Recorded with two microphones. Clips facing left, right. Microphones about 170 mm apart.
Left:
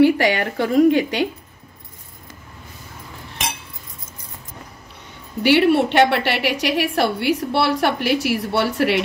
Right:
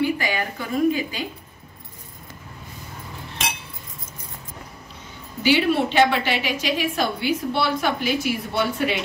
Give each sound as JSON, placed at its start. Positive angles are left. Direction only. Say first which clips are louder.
{"t": 0.0, "sound": "a woman's voice", "louder": "left 8 dB", "side_deg": 70}
{"t": 5.4, "sound": "a woman's voice", "louder": "left 4 dB", "side_deg": 65}